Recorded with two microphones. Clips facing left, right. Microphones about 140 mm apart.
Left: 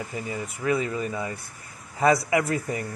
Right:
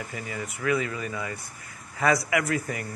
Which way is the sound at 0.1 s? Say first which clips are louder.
Left 3 dB; 25° left (ahead or behind).